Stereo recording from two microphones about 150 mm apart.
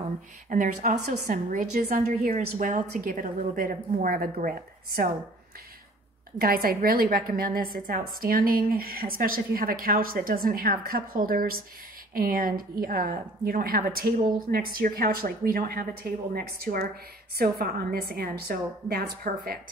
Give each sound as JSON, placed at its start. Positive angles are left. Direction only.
{"t": 0.5, "sound": "a woman's voice", "side_deg": -60}
{"t": 6.4, "sound": "a woman's voice", "side_deg": -75}